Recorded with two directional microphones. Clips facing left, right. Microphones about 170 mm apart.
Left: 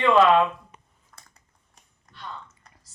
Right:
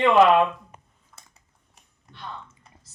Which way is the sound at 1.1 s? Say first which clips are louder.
Even; 5° right (ahead or behind).